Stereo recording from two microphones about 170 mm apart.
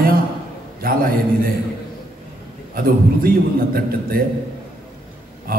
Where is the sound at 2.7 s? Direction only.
60° right (ahead or behind).